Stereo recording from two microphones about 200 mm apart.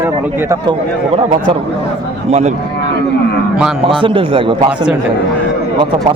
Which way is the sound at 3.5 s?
Centre (ahead or behind).